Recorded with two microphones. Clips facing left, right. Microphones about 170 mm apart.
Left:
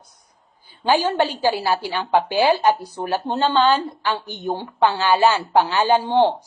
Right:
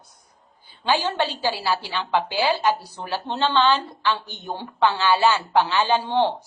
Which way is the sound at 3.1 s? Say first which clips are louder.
Left 3 dB; 40° left (ahead or behind).